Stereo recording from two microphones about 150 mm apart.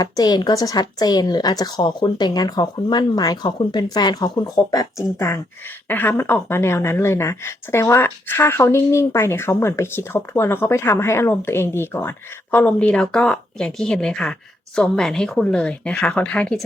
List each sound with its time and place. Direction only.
0.0 s a woman's voice: 25° left (ahead or behind); by 16.6 s 5° left (ahead or behind)